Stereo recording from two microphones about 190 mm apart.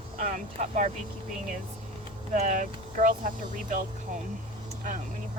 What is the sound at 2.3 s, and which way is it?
Speech, 40° right (ahead or behind).